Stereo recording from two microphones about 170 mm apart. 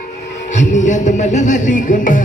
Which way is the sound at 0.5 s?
45° left (ahead or behind).